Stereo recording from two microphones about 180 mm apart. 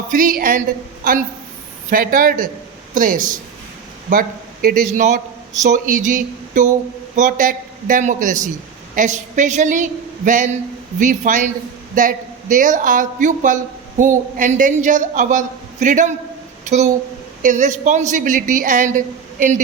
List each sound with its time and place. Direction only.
0.1 s a woman's voice: 50° right (ahead or behind)